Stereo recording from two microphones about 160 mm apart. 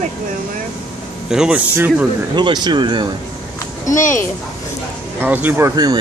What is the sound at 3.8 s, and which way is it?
Speech, 50° left (ahead or behind).